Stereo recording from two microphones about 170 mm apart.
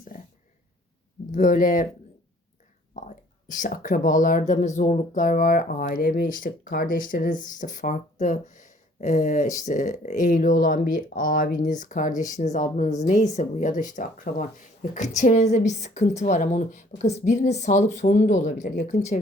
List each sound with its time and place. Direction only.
1.3 s speech: 50° left (ahead or behind)
2.9 s speech: 50° left (ahead or behind)